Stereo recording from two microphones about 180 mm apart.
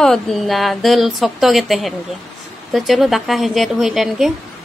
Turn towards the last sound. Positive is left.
turn(degrees=0)  # may be behind; listen again after turning